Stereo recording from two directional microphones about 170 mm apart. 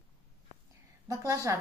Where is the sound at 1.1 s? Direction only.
20° right (ahead or behind).